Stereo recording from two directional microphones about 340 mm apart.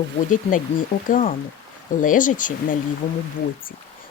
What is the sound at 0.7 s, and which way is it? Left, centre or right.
Speech, left.